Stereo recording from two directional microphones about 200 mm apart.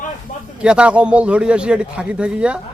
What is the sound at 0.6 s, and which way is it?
A man's voice, 5° right (ahead or behind).